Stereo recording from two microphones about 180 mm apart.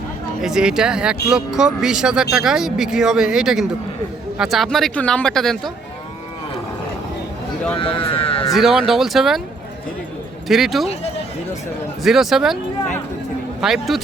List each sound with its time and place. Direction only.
0.4 s speech: 5° right (ahead or behind)
7.8 s speech: 30° left (ahead or behind)
8.5 s speech: centre (ahead or behind)
10.5 s speech: centre (ahead or behind)
12.0 s speech: centre (ahead or behind)
13.6 s speech: centre (ahead or behind)